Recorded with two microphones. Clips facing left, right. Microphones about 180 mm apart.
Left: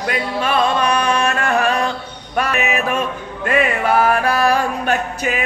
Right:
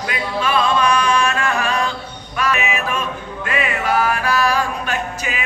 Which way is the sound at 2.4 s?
55° left (ahead or behind).